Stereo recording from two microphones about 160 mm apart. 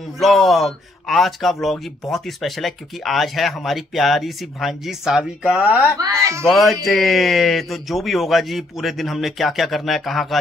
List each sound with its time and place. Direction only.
0.2 s a man's voice: centre (ahead or behind); by 6.4 s 20° right (ahead or behind)
6.4 s a man's voice: centre (ahead or behind)